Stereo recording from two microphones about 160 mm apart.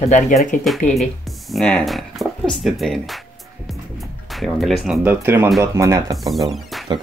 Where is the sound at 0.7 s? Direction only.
Centre (ahead or behind).